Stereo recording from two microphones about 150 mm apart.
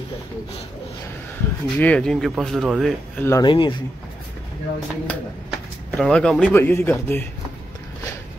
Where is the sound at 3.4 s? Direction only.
30° left (ahead or behind).